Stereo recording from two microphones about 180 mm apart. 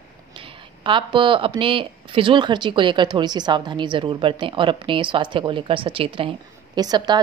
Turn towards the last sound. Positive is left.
turn(degrees=-25)  # may be behind; listen again after turning